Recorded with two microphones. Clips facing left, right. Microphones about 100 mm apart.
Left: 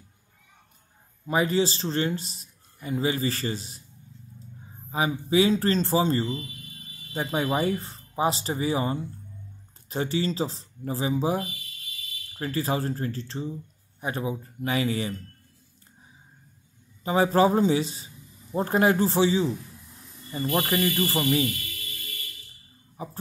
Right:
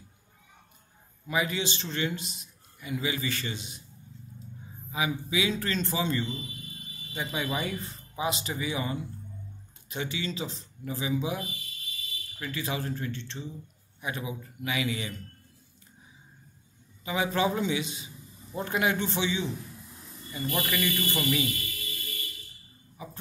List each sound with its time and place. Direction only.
1.2 s a man's voice: 40° left (ahead or behind)
4.9 s a man's voice: 40° left (ahead or behind)
17.0 s a man's voice: 40° left (ahead or behind)
23.0 s a man's voice: 40° left (ahead or behind)